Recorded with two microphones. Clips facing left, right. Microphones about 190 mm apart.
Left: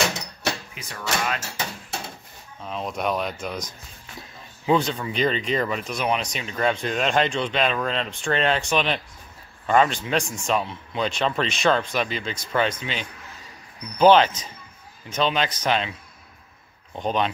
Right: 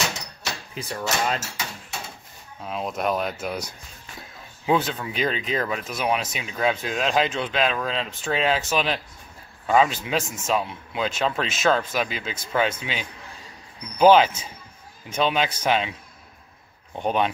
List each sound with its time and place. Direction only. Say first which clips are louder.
0.7 s speech: right 2 dB; 35° right (ahead or behind)
2.6 s speech: right 1 dB; 5° right (ahead or behind)
13.9 s a man's voice: even; 10° right (ahead or behind)
16.9 s a man's voice: right 1 dB; 10° right (ahead or behind)